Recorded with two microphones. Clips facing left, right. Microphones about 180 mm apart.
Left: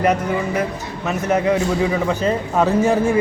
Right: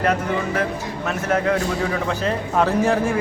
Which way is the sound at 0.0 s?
10° left (ahead or behind).